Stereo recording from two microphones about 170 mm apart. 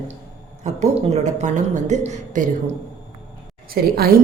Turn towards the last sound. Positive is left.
turn(degrees=-60)  # may be behind; listen again after turning